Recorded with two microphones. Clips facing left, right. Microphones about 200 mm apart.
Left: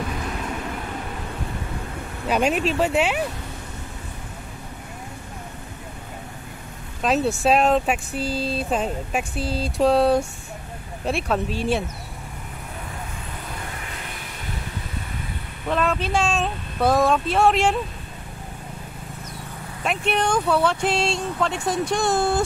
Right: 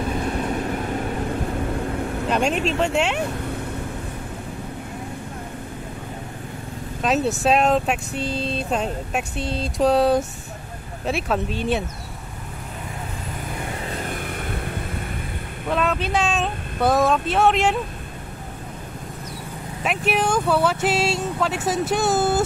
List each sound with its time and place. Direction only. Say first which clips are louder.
2.2 s speech: left 2 dB; 5° left (ahead or behind)
7.0 s speech: even; centre (ahead or behind)
13.8 s vehicle: right 8 dB; 40° right (ahead or behind)
15.7 s speech: even; centre (ahead or behind)
19.8 s speech: right 1 dB; 5° right (ahead or behind)